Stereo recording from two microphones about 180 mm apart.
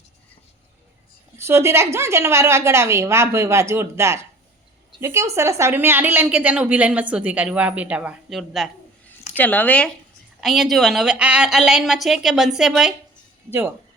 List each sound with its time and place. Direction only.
1.4 s a woman's voice: 15° right (ahead or behind)
9.4 s a woman's voice: 10° left (ahead or behind)